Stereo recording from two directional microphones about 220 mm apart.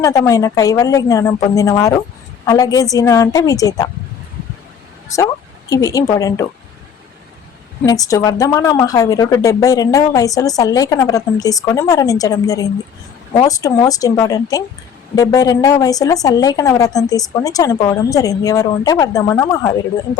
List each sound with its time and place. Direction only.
0.0 s a woman's voice: 15° left (ahead or behind)
5.1 s speech: 15° left (ahead or behind)
7.9 s a woman's voice: 15° left (ahead or behind)